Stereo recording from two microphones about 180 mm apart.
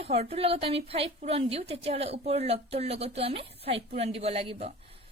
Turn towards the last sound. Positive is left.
turn(degrees=-35)  # may be behind; listen again after turning